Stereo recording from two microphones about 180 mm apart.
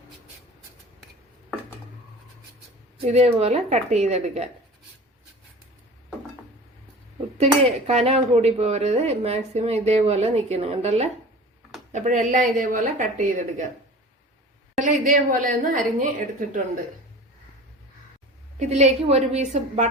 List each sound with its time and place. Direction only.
3.1 s speech: 35° right (ahead or behind)
7.3 s a woman's voice: 35° right (ahead or behind)
14.8 s a woman's voice: 45° right (ahead or behind)
18.6 s speech: 40° right (ahead or behind)